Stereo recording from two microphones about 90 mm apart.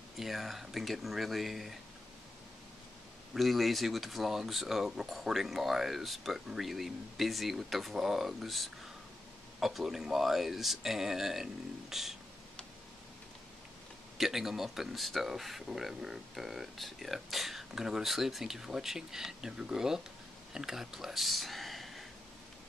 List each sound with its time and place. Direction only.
0.2 s speech: centre (ahead or behind)
3.3 s speech: centre (ahead or behind)
14.1 s speech: 5° right (ahead or behind)